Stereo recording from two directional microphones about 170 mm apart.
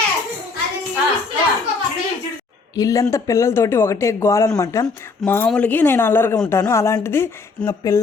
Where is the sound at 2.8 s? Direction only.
20° left (ahead or behind).